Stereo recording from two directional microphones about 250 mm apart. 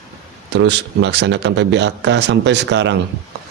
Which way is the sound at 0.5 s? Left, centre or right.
Right.